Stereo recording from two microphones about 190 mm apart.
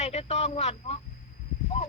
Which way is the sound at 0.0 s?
35° left (ahead or behind).